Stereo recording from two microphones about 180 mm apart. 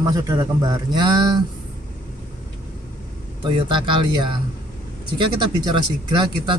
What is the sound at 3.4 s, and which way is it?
Speech, 25° right (ahead or behind).